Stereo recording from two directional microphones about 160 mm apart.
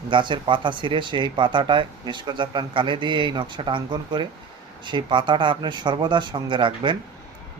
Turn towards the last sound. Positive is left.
turn(degrees=-30)  # may be behind; listen again after turning